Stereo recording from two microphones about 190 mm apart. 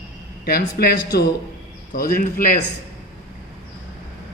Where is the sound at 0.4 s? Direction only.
55° left (ahead or behind).